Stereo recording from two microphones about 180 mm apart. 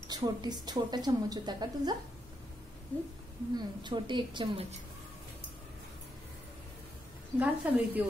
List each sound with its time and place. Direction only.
0.1 s a woman's voice: 25° right (ahead or behind)
2.9 s speech: 10° left (ahead or behind)
3.5 s a woman's voice: 25° right (ahead or behind)
7.3 s a woman's voice: 10° right (ahead or behind)